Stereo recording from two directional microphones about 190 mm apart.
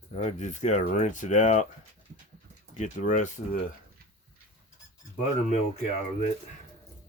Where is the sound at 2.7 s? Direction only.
40° left (ahead or behind).